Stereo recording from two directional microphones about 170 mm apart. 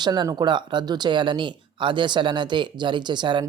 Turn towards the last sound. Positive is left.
turn(degrees=-25)  # may be behind; listen again after turning